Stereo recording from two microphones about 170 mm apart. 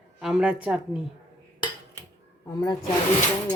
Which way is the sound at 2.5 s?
25° left (ahead or behind).